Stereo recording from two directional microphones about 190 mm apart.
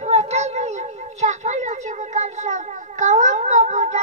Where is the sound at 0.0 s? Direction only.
35° right (ahead or behind).